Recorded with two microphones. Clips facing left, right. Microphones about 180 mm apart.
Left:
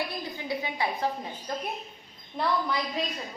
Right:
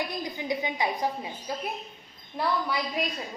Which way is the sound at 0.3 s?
15° right (ahead or behind).